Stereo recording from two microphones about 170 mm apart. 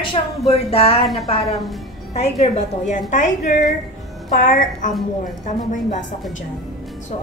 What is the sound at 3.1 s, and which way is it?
A woman's voice, 50° left (ahead or behind).